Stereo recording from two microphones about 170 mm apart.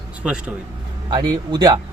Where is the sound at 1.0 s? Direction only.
25° right (ahead or behind).